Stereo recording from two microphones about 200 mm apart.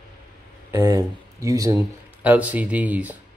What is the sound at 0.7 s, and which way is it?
Speech, 15° right (ahead or behind).